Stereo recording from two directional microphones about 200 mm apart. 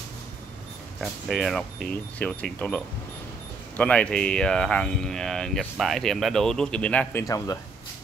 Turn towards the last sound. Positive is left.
turn(degrees=15)  # may be behind; listen again after turning